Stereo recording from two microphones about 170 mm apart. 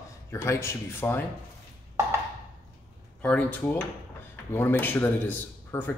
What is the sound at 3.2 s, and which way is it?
Speech, 10° left (ahead or behind).